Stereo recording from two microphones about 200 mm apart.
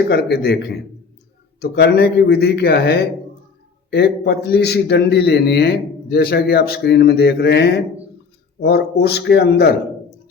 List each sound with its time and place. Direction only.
0.1 s a man's voice: 55° left (ahead or behind)